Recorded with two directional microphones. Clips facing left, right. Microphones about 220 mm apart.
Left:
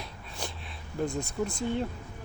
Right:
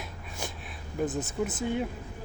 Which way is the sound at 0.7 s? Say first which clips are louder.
Right 1 dB; 5° right (ahead or behind).